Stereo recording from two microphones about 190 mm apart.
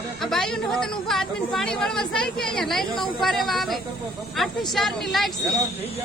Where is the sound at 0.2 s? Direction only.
Centre (ahead or behind).